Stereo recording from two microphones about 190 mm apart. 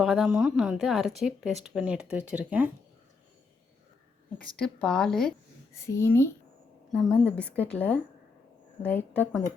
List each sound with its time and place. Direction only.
0.0 s a woman's voice: centre (ahead or behind)
4.5 s a woman's voice: 5° left (ahead or behind)
5.7 s speech: 15° left (ahead or behind)
6.9 s a woman's voice: centre (ahead or behind)